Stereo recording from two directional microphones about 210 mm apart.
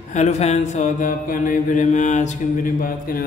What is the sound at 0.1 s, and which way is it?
Mantra, 35° left (ahead or behind).